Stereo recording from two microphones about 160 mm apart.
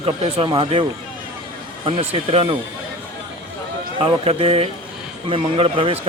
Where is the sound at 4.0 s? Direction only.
35° right (ahead or behind).